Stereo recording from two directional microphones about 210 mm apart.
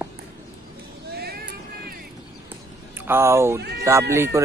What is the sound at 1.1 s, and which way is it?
Vehicle, 50° right (ahead or behind).